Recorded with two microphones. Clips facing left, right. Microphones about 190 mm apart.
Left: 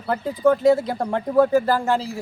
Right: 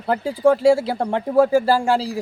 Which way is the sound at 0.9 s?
25° right (ahead or behind).